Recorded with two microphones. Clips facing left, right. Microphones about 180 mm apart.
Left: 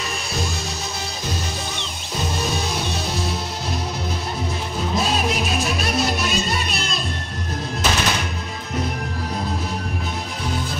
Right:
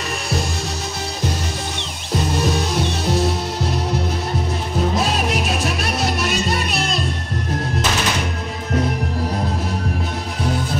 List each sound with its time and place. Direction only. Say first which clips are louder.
5.3 s music: right 2 dB; 65° right (ahead or behind)